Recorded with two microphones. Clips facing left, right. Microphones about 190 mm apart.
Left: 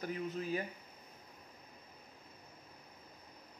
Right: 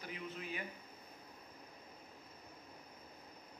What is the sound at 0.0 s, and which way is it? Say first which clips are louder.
Speech: left 8 dB; 40° left (ahead or behind).